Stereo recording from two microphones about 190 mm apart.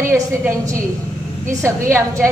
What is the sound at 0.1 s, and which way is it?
A woman's voice, 15° right (ahead or behind).